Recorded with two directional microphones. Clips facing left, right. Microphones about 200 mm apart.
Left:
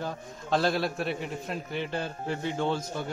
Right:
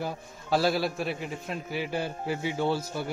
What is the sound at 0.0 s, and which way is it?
A man's voice, 10° right (ahead or behind).